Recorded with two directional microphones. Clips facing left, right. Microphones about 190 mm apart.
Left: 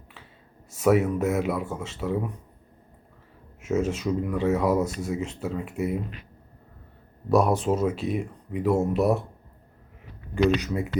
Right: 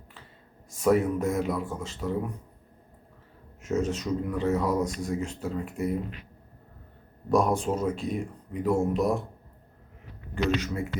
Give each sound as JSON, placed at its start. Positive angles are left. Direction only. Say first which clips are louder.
{"t": 0.8, "sound": "speech", "louder": "left 2 dB", "side_deg": 5}
{"t": 3.6, "sound": "speech", "louder": "left 2 dB", "side_deg": 10}
{"t": 7.3, "sound": "speech", "louder": "left 3 dB", "side_deg": 5}
{"t": 10.3, "sound": "speech", "louder": "left 5 dB", "side_deg": 15}